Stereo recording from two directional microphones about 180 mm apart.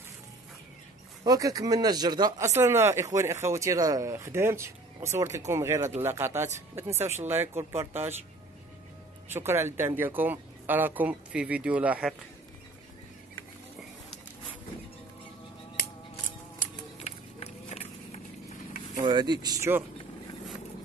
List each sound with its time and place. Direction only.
1.2 s speech: 20° right (ahead or behind)
9.3 s speech: 15° right (ahead or behind)
17.0 s run: 35° left (ahead or behind)
18.9 s speech: 25° right (ahead or behind)